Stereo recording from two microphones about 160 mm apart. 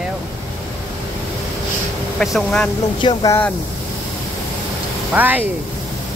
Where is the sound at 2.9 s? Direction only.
30° left (ahead or behind).